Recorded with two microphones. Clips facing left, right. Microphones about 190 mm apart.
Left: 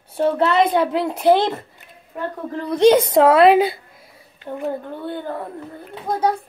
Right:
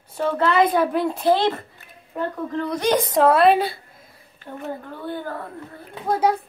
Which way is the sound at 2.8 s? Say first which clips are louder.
Left 7 dB; 25° left (ahead or behind).